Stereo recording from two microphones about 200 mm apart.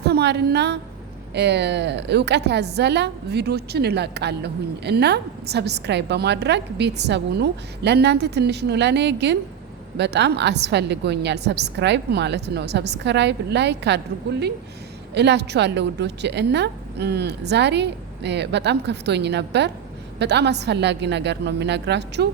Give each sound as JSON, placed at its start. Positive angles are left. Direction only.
{"t": 0.0, "sound": "a woman's voice", "side_deg": -55}